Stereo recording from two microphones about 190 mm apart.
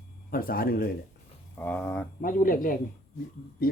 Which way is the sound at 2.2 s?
45° left (ahead or behind).